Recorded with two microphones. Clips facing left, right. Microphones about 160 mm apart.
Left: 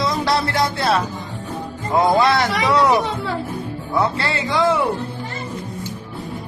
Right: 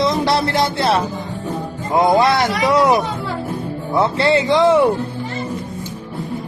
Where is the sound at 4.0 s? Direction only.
25° right (ahead or behind).